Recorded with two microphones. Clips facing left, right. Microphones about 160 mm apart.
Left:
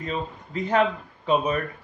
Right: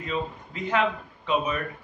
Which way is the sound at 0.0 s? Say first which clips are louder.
Even; 40° left (ahead or behind).